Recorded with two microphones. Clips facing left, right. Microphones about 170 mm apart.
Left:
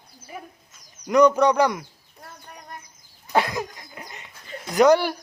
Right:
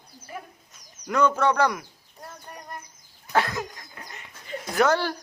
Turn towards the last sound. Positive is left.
turn(degrees=15)  # may be behind; listen again after turning